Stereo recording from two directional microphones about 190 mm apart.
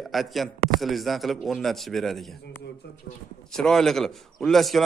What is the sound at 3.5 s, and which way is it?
A man's voice, centre (ahead or behind).